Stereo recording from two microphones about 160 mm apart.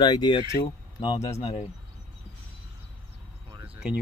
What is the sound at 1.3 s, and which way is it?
Speech, 40° left (ahead or behind).